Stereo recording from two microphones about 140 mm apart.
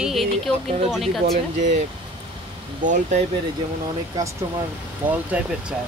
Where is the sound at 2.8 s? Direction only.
65° right (ahead or behind).